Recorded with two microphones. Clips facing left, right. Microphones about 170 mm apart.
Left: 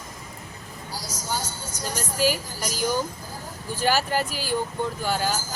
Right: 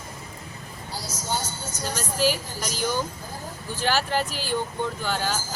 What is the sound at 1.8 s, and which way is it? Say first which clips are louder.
Speech: even; 10° left (ahead or behind).